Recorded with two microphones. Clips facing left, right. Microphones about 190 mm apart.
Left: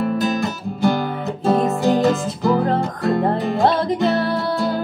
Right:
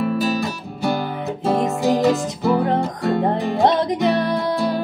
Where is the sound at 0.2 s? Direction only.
Centre (ahead or behind).